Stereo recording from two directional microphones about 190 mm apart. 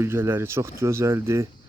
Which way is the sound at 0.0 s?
10° right (ahead or behind).